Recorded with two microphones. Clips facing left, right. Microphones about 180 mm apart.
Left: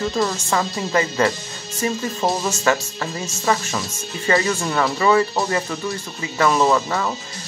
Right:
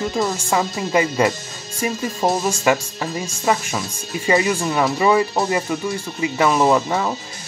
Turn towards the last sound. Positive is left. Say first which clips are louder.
# right 2 dB
turn(degrees=-20)  # may be behind; listen again after turning